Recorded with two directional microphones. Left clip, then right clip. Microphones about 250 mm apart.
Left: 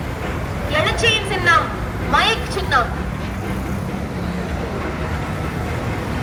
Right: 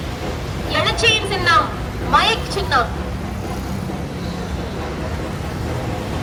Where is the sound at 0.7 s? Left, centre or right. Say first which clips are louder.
Right 1 dB; centre.